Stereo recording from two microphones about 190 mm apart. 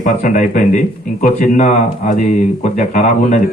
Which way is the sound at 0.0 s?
40° left (ahead or behind).